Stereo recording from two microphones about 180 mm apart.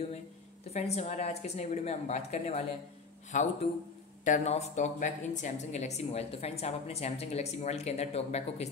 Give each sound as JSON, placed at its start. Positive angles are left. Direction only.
{"t": 0.7, "sound": "a woman's voice", "side_deg": 35}